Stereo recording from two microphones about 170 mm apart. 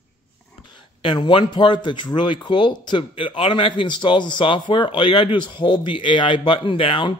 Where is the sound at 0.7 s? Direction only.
30° left (ahead or behind).